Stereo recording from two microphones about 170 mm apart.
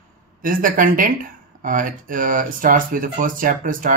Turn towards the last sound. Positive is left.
turn(degrees=-50)  # may be behind; listen again after turning